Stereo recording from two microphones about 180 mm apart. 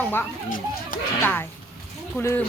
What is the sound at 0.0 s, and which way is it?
A woman's voice, 10° left (ahead or behind).